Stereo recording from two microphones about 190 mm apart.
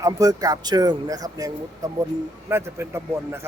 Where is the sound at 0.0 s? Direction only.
20° right (ahead or behind).